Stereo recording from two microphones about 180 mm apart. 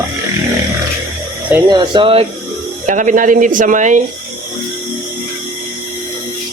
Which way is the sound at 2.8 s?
45° right (ahead or behind).